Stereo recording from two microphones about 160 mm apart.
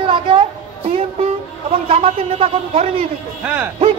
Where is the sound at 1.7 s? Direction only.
40° right (ahead or behind).